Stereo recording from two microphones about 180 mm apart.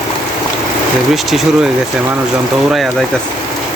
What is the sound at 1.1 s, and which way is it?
Speech, centre (ahead or behind).